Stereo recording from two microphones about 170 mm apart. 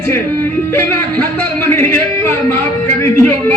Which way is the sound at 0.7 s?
15° left (ahead or behind).